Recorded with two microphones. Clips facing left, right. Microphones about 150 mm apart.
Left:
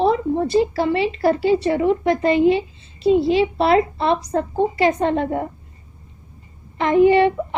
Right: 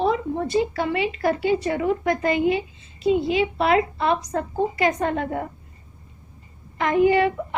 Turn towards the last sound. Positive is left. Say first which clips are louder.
# left 4 dB
turn(degrees=25)  # may be behind; listen again after turning